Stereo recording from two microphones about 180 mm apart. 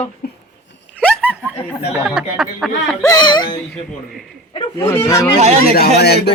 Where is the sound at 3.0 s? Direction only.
20° left (ahead or behind).